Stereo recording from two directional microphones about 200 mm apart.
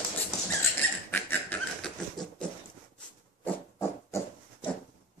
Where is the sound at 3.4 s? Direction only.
15° left (ahead or behind).